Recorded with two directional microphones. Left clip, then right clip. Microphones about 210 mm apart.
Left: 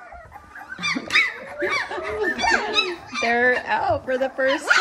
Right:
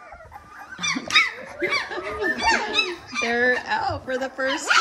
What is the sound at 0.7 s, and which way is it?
Squeak, 5° right (ahead or behind).